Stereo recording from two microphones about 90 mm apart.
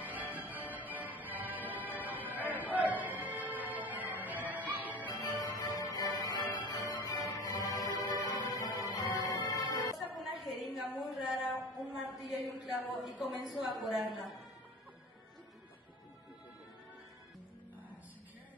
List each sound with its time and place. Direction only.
0.0 s music: 20° right (ahead or behind)
5.1 s music: 45° left (ahead or behind)
10.1 s a sound: centre (ahead or behind)
13.4 s a woman's voice: centre (ahead or behind)